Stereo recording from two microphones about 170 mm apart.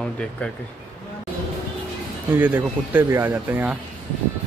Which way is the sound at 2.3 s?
10° right (ahead or behind).